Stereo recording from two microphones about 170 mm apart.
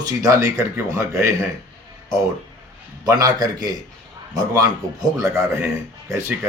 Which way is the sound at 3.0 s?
20° right (ahead or behind).